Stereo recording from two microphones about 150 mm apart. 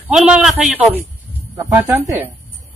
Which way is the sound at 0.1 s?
5° right (ahead or behind).